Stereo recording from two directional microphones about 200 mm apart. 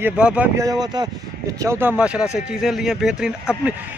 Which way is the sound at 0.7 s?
20° right (ahead or behind).